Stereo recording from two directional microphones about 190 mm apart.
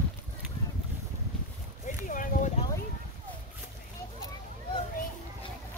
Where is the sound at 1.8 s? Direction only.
45° left (ahead or behind).